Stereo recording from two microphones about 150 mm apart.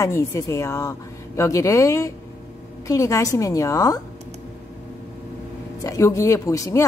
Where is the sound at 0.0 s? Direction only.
20° left (ahead or behind).